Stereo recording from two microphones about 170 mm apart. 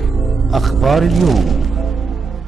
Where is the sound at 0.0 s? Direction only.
Centre (ahead or behind).